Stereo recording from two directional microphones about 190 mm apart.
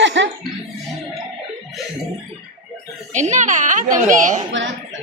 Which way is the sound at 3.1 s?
40° right (ahead or behind).